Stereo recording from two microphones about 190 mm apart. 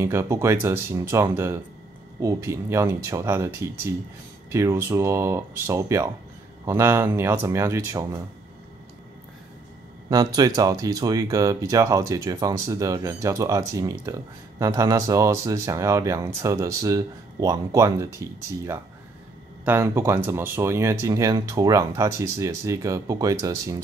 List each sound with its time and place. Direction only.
0.0 s speech: 15° right (ahead or behind)
10.0 s speech: 20° right (ahead or behind)
19.6 s speech: 10° right (ahead or behind)